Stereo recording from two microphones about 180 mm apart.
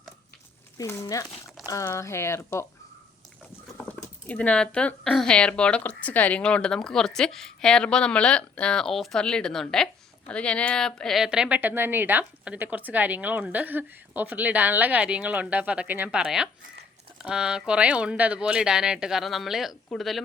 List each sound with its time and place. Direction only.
0.8 s speech: 20° left (ahead or behind)
3.8 s speech: 10° left (ahead or behind)